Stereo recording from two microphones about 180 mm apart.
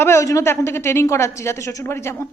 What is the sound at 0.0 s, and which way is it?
Speech, 15° left (ahead or behind).